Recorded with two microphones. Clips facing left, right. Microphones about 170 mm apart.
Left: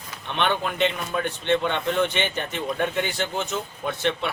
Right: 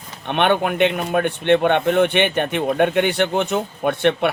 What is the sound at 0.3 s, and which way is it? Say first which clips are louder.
Speech: right 7 dB; 60° right (ahead or behind).